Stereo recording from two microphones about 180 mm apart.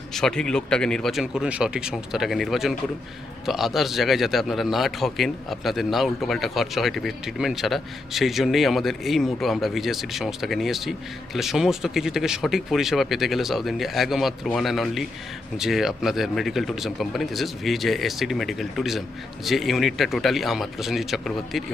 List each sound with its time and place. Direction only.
0.1 s a man's voice: 5° left (ahead or behind)